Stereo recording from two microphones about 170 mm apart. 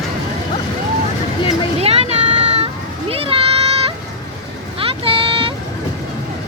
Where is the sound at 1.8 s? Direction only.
35° right (ahead or behind).